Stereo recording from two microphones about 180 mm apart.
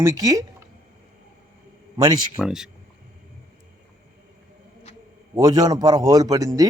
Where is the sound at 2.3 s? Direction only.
5° right (ahead or behind).